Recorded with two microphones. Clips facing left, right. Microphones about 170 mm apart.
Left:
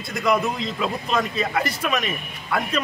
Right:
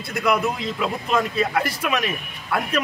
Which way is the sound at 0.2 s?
10° right (ahead or behind).